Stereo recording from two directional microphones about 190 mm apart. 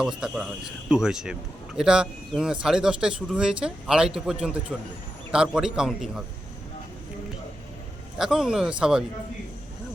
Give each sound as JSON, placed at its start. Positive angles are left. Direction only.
{"t": 0.0, "sound": "speech", "side_deg": -5}
{"t": 8.2, "sound": "speech", "side_deg": 0}